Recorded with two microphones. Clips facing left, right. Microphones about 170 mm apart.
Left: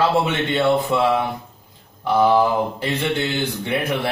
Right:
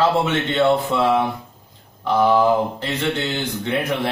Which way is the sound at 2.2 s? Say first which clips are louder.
Right 1 dB; 10° left (ahead or behind).